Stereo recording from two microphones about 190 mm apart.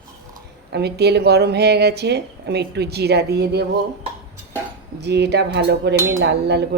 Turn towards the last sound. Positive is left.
turn(degrees=-60)  # may be behind; listen again after turning